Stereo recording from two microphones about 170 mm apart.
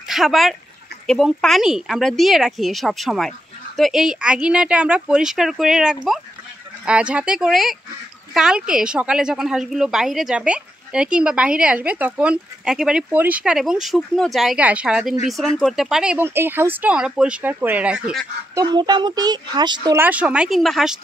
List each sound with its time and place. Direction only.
0.1 s speech: centre (ahead or behind)
18.5 s speech: 20° right (ahead or behind)
20.0 s speech: 10° right (ahead or behind)